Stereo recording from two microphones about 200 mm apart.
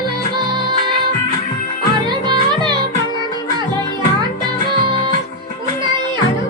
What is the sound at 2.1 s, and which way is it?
Music, 20° right (ahead or behind).